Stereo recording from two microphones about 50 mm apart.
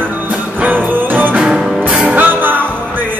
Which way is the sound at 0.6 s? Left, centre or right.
Right.